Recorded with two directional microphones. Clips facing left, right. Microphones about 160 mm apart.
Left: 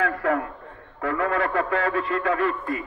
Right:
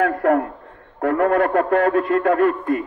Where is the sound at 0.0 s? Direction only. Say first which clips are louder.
Right 6 dB; 50° right (ahead or behind).